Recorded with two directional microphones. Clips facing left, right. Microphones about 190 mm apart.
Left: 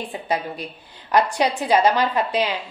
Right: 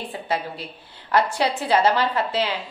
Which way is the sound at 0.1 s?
15° left (ahead or behind).